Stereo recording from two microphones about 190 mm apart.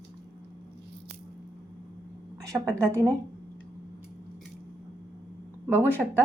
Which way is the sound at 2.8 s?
15° right (ahead or behind).